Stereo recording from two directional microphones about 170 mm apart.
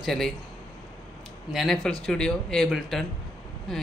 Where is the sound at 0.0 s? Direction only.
Centre (ahead or behind).